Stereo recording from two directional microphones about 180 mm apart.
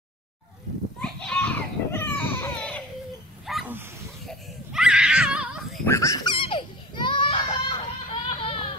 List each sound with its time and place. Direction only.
1.0 s a sound: 5° left (ahead or behind)
3.4 s dog: centre (ahead or behind)
4.3 s crying: 5° right (ahead or behind)
5.9 s baby cry: 15° left (ahead or behind); by 8.5 s 30° left (ahead or behind)